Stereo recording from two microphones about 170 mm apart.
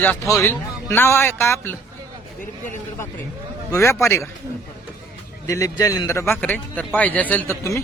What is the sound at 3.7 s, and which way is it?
Speech, 15° left (ahead or behind).